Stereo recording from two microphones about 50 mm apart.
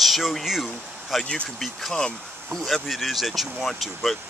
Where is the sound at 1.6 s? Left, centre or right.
Centre.